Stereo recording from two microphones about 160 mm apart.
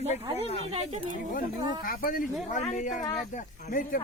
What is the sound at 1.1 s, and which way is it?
A man's voice, 55° left (ahead or behind).